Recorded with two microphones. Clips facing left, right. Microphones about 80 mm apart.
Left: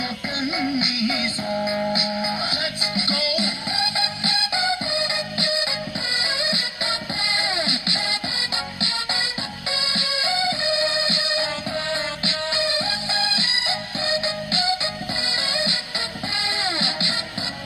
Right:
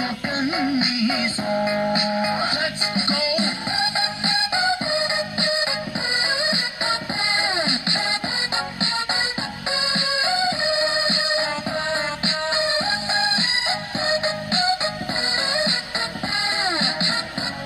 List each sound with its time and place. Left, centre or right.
0.4 s music: right
2.9 s music: right
7.5 s music: right
9.9 s music: right
12.5 s music: right